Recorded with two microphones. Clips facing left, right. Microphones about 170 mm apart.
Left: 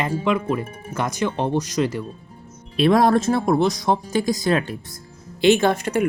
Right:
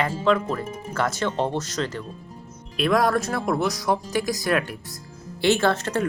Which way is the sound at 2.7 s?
30° left (ahead or behind).